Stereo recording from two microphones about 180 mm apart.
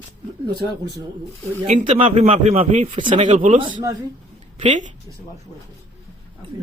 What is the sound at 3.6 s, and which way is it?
Speech, 25° right (ahead or behind).